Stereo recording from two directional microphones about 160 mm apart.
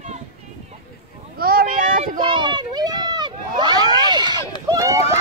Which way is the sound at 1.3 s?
65° right (ahead or behind).